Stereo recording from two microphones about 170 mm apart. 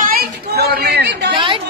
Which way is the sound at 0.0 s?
65° right (ahead or behind).